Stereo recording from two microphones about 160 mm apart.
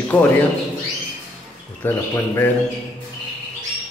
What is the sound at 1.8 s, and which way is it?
Speech, 15° left (ahead or behind).